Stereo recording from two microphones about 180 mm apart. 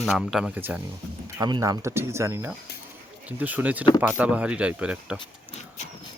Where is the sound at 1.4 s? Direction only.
20° right (ahead or behind); by 5.2 s 5° right (ahead or behind).